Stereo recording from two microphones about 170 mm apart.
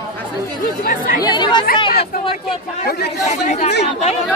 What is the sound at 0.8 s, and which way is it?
Speech, 55° left (ahead or behind).